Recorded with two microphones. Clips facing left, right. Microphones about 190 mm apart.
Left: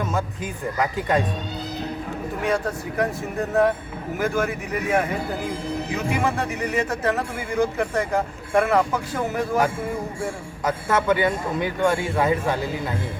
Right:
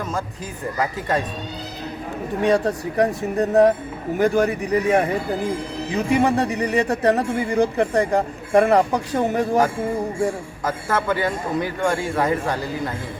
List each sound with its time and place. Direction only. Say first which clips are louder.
0.8 s a man's voice: left 1 dB; centre (ahead or behind)
2.4 s speech: right 6 dB; 35° right (ahead or behind)
10.7 s a man's voice: left 2 dB; centre (ahead or behind)